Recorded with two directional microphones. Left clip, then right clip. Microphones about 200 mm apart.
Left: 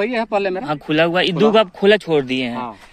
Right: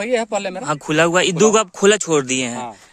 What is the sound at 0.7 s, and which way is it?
Speech, 60° right (ahead or behind).